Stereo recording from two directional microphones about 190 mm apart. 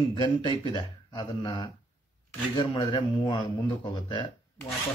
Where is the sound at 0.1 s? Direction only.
25° left (ahead or behind).